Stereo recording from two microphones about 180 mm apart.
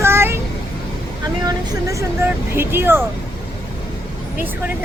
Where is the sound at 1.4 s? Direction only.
15° right (ahead or behind).